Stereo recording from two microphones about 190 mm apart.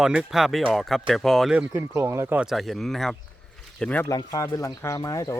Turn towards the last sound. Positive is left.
turn(degrees=20)  # may be behind; listen again after turning